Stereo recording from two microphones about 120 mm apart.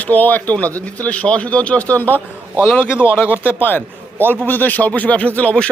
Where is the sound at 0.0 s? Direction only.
15° left (ahead or behind).